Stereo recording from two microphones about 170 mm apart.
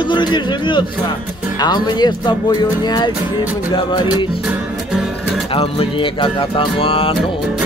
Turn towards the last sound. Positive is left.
turn(degrees=30)  # may be behind; listen again after turning